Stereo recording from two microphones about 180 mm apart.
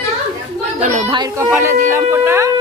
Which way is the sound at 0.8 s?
40° right (ahead or behind).